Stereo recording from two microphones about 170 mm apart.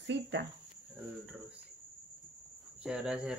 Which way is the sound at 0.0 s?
90° right.